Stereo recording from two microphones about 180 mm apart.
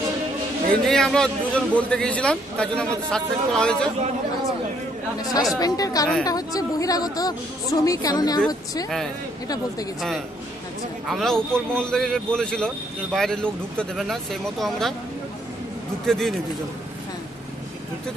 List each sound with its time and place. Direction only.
0.7 s a man's voice: 5° left (ahead or behind)
5.5 s a woman's voice: 20° left (ahead or behind)
11.1 s a man's voice: centre (ahead or behind)
16.0 s a man's voice: centre (ahead or behind)